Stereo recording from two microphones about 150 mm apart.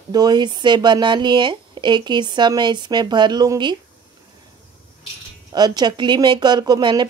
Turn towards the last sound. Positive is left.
turn(degrees=-30)  # may be behind; listen again after turning